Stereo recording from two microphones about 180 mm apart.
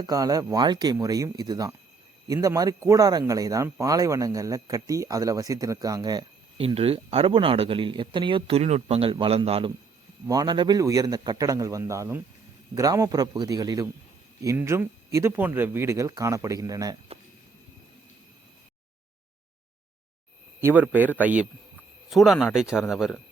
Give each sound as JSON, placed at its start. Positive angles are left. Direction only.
{"t": 0.0, "sound": "speech", "side_deg": -20}
{"t": 20.6, "sound": "speech", "side_deg": -10}